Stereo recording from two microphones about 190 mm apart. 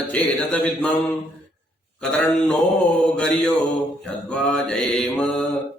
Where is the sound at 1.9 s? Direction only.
Centre (ahead or behind).